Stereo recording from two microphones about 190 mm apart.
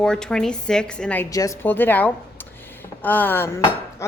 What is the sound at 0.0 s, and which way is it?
A woman's voice, 5° left (ahead or behind).